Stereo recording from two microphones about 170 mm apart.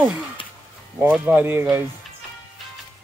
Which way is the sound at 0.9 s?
10° right (ahead or behind).